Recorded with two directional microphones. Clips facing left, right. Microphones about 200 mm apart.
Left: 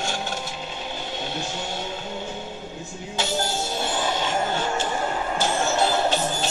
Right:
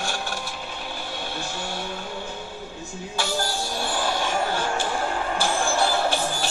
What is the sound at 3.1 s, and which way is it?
Music, 20° left (ahead or behind).